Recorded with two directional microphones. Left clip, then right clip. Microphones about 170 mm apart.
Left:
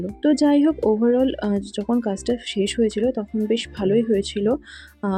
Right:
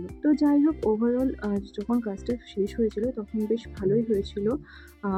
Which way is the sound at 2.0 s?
20° left (ahead or behind).